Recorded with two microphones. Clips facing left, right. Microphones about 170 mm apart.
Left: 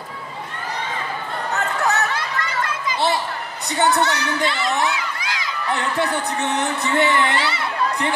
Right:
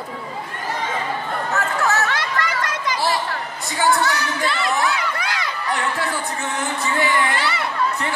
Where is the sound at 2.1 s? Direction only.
80° right.